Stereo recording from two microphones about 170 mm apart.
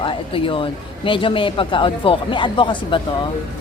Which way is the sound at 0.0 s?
30° left (ahead or behind).